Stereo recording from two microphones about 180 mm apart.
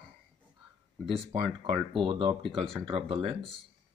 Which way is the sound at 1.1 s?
30° right (ahead or behind).